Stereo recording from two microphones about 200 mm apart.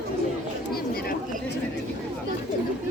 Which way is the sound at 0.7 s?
50° left (ahead or behind).